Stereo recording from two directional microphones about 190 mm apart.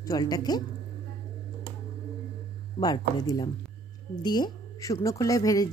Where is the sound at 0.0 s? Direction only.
20° left (ahead or behind).